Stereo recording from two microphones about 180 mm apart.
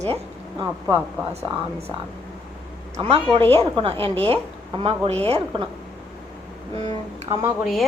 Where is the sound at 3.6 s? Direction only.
35° right (ahead or behind).